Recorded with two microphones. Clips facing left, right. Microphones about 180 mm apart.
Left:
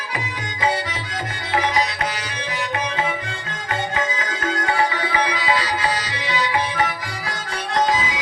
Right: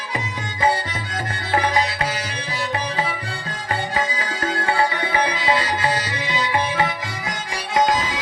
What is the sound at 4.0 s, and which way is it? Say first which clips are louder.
Music: even; 35° right (ahead or behind).